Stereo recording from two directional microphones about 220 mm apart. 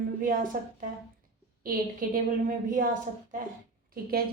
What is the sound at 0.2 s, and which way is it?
A woman's voice, 40° right (ahead or behind).